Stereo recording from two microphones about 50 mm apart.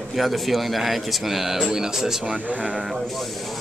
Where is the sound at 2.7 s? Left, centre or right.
Centre.